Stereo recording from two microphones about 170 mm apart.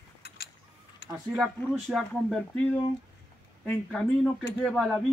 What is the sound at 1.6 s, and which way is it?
Speech, centre (ahead or behind).